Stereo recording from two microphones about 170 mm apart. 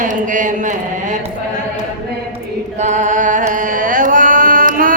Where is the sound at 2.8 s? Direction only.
45° right (ahead or behind).